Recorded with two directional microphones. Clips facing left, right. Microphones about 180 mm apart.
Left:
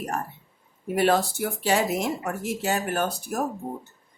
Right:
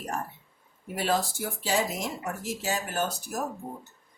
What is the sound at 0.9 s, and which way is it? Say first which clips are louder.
Speech: left 6 dB; 65° left (ahead or behind).